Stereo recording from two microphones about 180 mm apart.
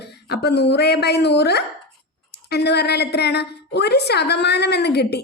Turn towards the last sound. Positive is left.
turn(degrees=65)  # may be behind; listen again after turning